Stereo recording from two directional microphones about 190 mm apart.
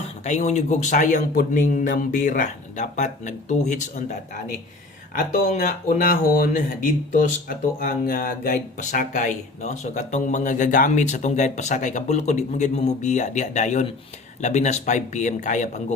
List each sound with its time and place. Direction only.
0.3 s speech: 40° left (ahead or behind)
5.1 s speech: 45° left (ahead or behind)